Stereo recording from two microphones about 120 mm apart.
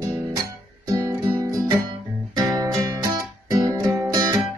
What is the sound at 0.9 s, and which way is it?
Guitar, 30° right (ahead or behind).